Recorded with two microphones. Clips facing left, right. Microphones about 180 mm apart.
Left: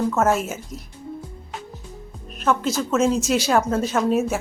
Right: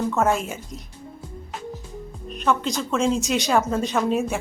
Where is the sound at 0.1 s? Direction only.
Centre (ahead or behind).